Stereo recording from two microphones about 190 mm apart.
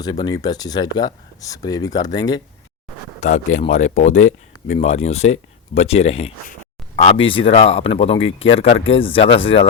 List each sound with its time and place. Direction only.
0.0 s speech: 20° left (ahead or behind)
3.2 s speech: 40° left (ahead or behind)